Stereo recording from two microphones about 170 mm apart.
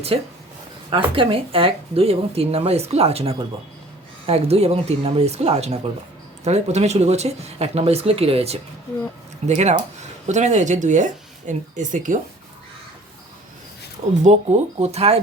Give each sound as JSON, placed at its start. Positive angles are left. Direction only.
{"t": 0.1, "sound": "speech", "side_deg": -35}
{"t": 9.6, "sound": "speech", "side_deg": -40}
{"t": 14.3, "sound": "speech", "side_deg": -40}